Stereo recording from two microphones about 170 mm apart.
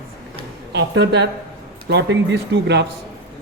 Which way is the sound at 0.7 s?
90° right.